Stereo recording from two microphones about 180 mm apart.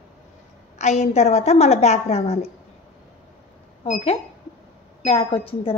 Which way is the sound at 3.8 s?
35° left (ahead or behind).